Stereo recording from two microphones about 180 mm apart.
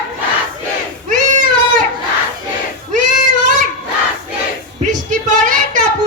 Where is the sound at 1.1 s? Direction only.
50° right (ahead or behind).